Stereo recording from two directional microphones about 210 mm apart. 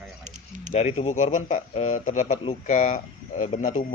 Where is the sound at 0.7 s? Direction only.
35° left (ahead or behind).